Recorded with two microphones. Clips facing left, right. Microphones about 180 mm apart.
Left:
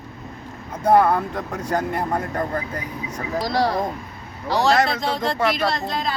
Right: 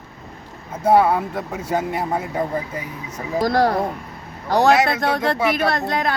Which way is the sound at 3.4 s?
50° right (ahead or behind).